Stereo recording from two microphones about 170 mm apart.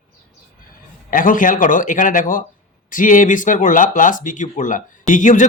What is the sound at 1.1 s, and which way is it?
Speech, 50° left (ahead or behind).